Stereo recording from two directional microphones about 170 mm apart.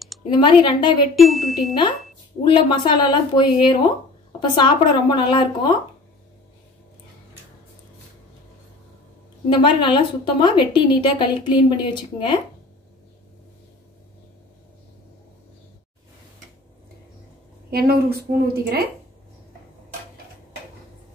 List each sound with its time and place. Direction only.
0.2 s a woman's voice: 30° left (ahead or behind)
1.1 s chime: centre (ahead or behind)
2.4 s a woman's voice: 25° left (ahead or behind)
9.5 s a woman's voice: 30° left (ahead or behind)
17.6 s a woman's voice: 65° right (ahead or behind)